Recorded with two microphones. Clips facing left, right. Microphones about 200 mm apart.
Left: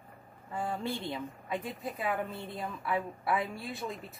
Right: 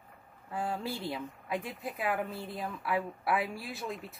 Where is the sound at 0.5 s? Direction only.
Centre (ahead or behind).